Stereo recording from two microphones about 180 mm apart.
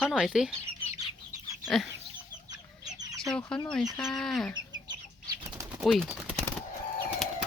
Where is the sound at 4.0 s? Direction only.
Centre (ahead or behind).